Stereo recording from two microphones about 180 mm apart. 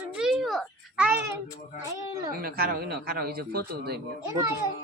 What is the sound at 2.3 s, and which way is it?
Speech, 55° right (ahead or behind).